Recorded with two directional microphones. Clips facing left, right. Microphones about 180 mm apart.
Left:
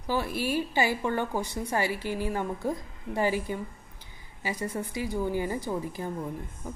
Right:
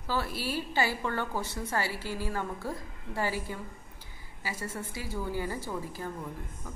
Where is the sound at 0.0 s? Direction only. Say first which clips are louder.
Left 4 dB; 15° left (ahead or behind).